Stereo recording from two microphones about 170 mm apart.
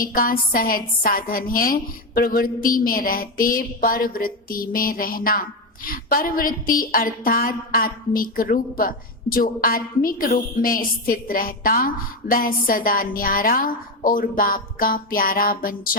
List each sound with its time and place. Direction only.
0.0 s a woman's voice: 55° left (ahead or behind)